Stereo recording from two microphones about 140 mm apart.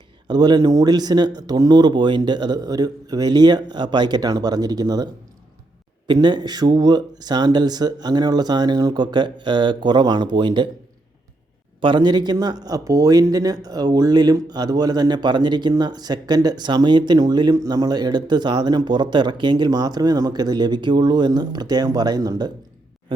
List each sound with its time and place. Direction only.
0.3 s speech: 30° right (ahead or behind)
6.1 s speech: 30° right (ahead or behind)
11.8 s speech: 35° right (ahead or behind)